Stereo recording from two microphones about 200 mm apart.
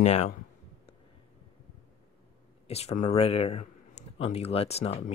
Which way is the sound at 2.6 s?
30° left (ahead or behind).